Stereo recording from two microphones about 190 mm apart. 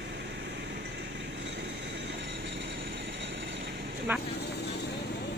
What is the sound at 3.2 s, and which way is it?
Vehicle, 70° right (ahead or behind).